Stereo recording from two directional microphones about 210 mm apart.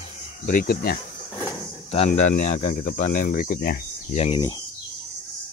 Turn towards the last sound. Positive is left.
turn(degrees=25)  # may be behind; listen again after turning